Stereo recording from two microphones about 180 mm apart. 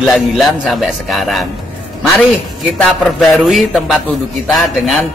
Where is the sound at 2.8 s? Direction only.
Centre (ahead or behind).